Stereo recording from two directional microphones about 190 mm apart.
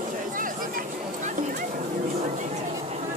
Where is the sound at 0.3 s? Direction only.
45° right (ahead or behind).